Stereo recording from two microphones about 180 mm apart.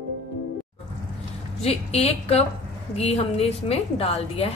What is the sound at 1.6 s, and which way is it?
A woman's voice, 35° left (ahead or behind).